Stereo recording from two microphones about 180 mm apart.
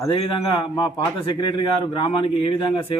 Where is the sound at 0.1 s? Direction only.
25° left (ahead or behind).